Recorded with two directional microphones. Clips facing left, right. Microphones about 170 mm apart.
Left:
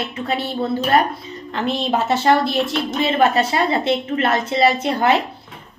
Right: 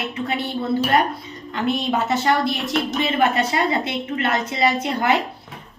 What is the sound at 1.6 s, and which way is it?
A woman's voice, 30° left (ahead or behind).